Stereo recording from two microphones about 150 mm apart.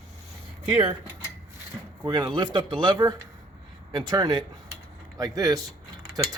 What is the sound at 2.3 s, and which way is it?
Speech, 30° right (ahead or behind).